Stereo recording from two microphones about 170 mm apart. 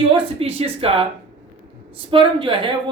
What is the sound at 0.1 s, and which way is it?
A woman's voice, 35° right (ahead or behind).